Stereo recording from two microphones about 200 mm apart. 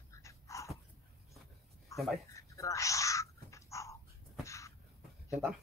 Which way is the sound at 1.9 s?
15° left (ahead or behind).